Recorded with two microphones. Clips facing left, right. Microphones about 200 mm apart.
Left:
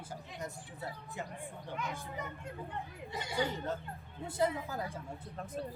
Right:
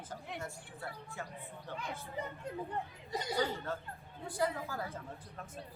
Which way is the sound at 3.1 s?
40° right (ahead or behind).